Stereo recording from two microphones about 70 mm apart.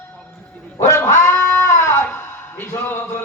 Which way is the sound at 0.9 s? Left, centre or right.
Left.